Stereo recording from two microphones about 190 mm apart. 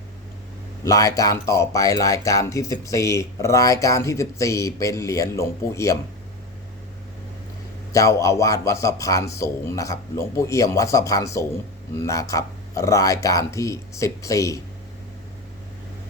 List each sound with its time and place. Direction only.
0.9 s speech: 20° left (ahead or behind)
7.9 s speech: 15° left (ahead or behind)